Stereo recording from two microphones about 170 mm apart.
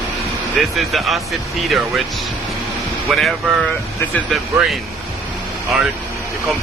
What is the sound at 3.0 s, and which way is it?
Speech, centre (ahead or behind).